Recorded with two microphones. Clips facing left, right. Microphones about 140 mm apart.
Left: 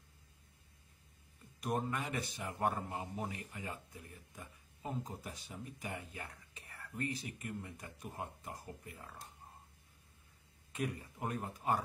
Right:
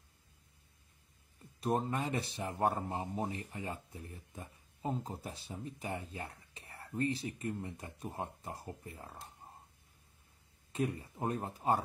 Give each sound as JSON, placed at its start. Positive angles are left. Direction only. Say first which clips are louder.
{"t": 1.6, "sound": "a man's voice", "louder": "right 4 dB", "side_deg": -30}
{"t": 10.7, "sound": "a man's voice", "louder": "right 4 dB", "side_deg": -30}